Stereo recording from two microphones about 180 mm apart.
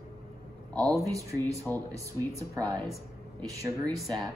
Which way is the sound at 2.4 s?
20° right (ahead or behind).